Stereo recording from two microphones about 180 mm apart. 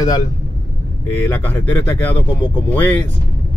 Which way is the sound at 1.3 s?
10° left (ahead or behind).